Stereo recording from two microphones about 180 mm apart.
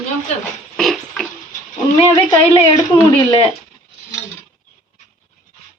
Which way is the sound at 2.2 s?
25° left (ahead or behind).